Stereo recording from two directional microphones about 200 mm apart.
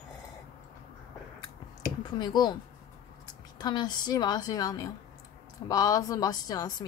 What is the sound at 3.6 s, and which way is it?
A woman's voice, 20° left (ahead or behind).